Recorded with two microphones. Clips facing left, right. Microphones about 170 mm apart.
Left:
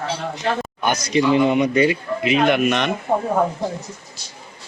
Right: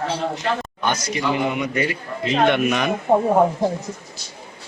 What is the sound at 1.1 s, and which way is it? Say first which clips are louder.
A man's voice: left 10 dB; 25° left (ahead or behind).